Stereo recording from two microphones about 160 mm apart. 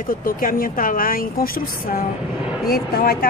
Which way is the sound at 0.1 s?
60° left (ahead or behind).